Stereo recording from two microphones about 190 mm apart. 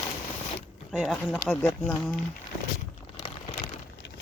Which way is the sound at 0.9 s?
Centre (ahead or behind).